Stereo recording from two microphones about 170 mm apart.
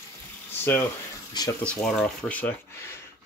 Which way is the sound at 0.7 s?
15° left (ahead or behind).